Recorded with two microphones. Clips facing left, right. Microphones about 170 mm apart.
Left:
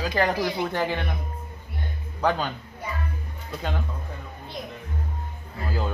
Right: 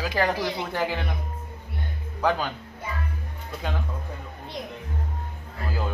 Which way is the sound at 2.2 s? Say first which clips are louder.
Even; 5° right (ahead or behind).